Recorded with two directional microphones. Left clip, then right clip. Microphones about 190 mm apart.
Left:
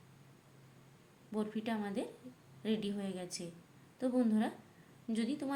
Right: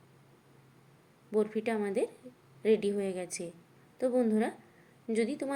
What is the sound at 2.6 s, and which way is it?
Speech, 20° left (ahead or behind).